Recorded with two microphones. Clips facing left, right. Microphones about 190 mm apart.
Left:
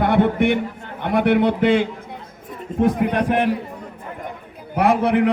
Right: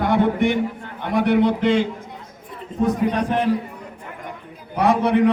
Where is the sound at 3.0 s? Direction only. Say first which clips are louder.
Left 1 dB; 60° left (ahead or behind).